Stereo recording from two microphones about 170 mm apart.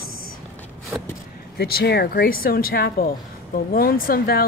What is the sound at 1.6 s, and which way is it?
Speech, 65° left (ahead or behind).